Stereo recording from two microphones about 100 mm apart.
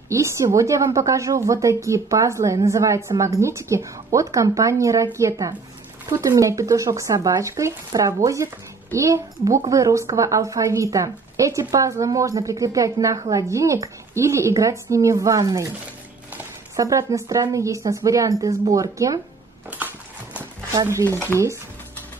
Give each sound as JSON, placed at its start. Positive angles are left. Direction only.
{"t": 0.1, "sound": "a woman's voice", "side_deg": -30}
{"t": 16.7, "sound": "a woman's voice", "side_deg": -35}